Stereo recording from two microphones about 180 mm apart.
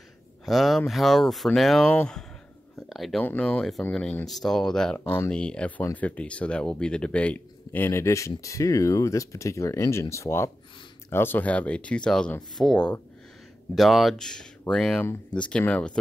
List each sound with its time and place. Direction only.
0.5 s speech: centre (ahead or behind)